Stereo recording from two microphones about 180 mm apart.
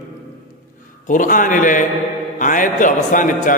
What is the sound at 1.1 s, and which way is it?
A man's voice, 45° left (ahead or behind).